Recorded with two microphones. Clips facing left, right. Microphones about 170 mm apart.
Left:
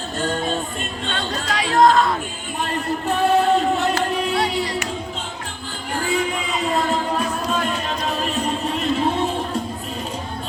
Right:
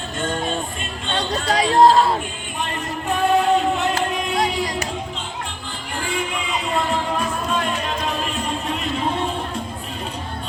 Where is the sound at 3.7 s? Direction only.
40° left (ahead or behind).